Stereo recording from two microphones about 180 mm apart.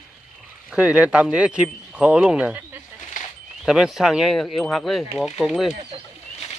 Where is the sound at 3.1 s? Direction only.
45° left (ahead or behind).